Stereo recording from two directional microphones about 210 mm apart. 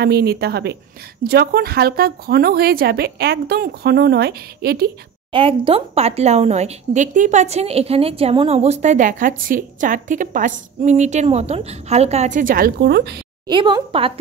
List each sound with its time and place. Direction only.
0.0 s a woman's voice: 50° right (ahead or behind)
5.3 s a woman's voice: 25° right (ahead or behind); by 13.2 s 50° right (ahead or behind)
13.5 s speech: 20° right (ahead or behind)